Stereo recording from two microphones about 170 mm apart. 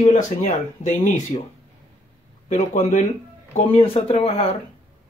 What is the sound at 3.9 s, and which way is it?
Speech, 35° left (ahead or behind).